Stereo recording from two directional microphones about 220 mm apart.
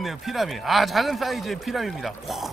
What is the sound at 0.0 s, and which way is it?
A man's voice, centre (ahead or behind).